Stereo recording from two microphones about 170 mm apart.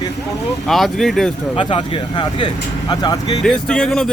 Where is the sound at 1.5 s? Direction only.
30° left (ahead or behind).